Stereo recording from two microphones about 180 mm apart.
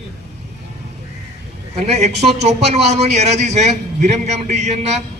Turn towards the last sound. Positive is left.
turn(degrees=-40)  # may be behind; listen again after turning